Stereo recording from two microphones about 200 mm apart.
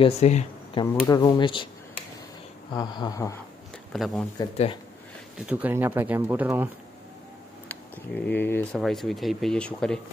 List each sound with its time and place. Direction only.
0.0 s speech: 35° left (ahead or behind)
1.0 s speech: 20° left (ahead or behind)
3.9 s speech: centre (ahead or behind)
5.5 s speech: 10° right (ahead or behind)
7.6 s speech: 10° left (ahead or behind)